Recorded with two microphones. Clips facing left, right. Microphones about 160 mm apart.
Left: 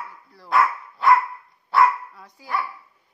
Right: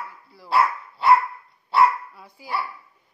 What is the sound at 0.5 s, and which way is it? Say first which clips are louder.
Dog: even; 30° right (ahead or behind).